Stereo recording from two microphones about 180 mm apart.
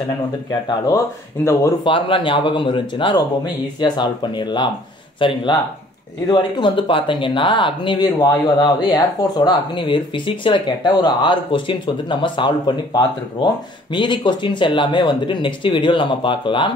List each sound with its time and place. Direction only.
0.5 s speech: 20° left (ahead or behind)
1.9 s speech: 30° left (ahead or behind)
13.9 s speech: 25° left (ahead or behind)